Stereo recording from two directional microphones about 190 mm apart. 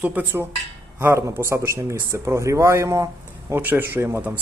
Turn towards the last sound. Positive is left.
turn(degrees=-10)  # may be behind; listen again after turning